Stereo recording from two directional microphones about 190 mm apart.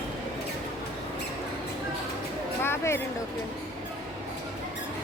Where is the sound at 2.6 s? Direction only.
15° left (ahead or behind).